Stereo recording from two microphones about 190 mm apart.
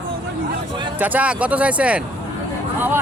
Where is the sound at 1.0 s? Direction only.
10° right (ahead or behind).